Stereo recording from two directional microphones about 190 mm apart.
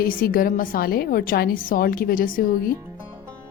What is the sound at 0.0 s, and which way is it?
A woman's voice, 50° left (ahead or behind).